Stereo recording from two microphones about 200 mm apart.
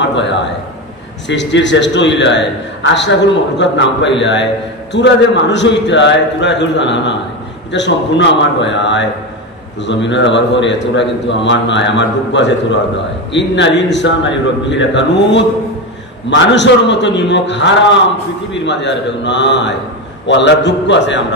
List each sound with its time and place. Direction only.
0.0 s a man's voice: 60° left (ahead or behind)